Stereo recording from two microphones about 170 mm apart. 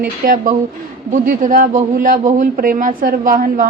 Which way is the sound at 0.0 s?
55° right (ahead or behind).